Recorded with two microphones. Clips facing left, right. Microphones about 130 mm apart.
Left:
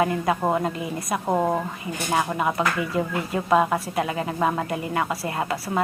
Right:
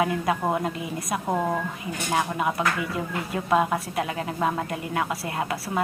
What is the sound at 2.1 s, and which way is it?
Speech, centre (ahead or behind).